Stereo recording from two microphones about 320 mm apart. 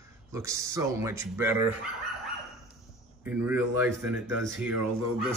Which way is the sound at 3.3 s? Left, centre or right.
Centre.